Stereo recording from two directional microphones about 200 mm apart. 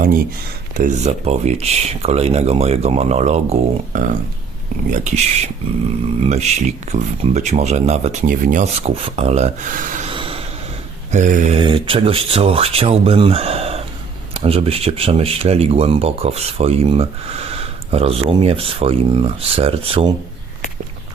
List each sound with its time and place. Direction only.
0.8 s speech: 35° right (ahead or behind)
10.1 s vehicle: 25° right (ahead or behind)
11.1 s speech: 40° right (ahead or behind)
11.5 s speech: 25° right (ahead or behind)